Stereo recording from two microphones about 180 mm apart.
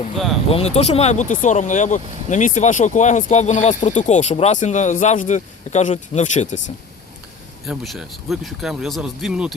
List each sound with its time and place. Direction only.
0.5 s speech: 35° left (ahead or behind)
7.7 s speech: centre (ahead or behind)